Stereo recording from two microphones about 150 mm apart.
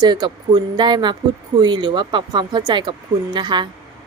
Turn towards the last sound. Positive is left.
turn(degrees=-30)  # may be behind; listen again after turning